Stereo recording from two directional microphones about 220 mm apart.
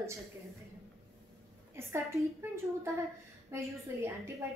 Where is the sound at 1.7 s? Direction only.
10° right (ahead or behind).